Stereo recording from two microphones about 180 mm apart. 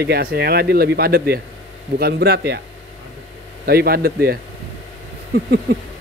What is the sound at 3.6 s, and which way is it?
Speech, 60° right (ahead or behind).